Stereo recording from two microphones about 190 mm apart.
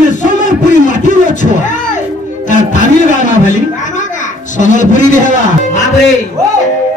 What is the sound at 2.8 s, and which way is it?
Speech, 40° left (ahead or behind).